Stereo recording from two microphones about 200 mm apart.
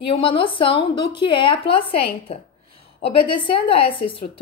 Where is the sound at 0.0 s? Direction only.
25° left (ahead or behind).